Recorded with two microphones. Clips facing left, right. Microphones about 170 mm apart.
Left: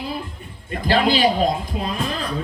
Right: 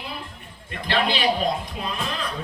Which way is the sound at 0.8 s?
40° left (ahead or behind).